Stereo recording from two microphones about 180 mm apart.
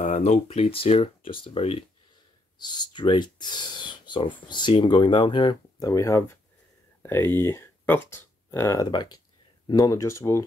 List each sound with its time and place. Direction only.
0.0 s speech: 40° left (ahead or behind); by 10.4 s 15° left (ahead or behind)